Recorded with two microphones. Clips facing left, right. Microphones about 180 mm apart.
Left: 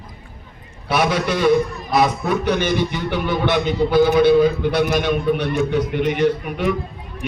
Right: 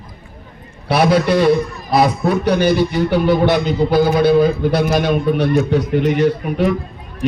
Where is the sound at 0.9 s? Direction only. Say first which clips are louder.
Right 5 dB; 35° right (ahead or behind).